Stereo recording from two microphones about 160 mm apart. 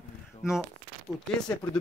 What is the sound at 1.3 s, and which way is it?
Speech, 5° left (ahead or behind).